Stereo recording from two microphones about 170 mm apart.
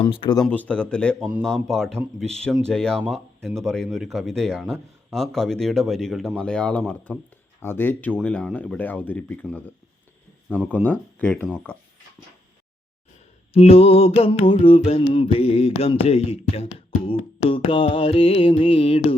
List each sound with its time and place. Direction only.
0.0 s music: 30° left (ahead or behind)
0.4 s speech: 10° left (ahead or behind)
13.5 s music: 35° left (ahead or behind)